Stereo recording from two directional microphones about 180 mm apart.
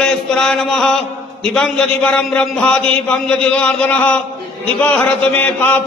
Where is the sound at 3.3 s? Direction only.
5° left (ahead or behind).